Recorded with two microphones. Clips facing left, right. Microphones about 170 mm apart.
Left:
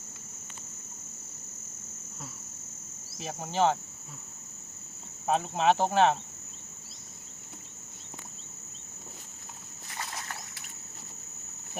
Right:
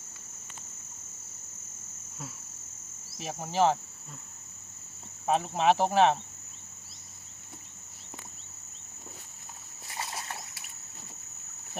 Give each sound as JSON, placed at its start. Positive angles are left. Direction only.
{"t": 3.2, "sound": "speech", "side_deg": 0}
{"t": 5.2, "sound": "speech", "side_deg": 0}
{"t": 9.9, "sound": "a sound", "side_deg": -25}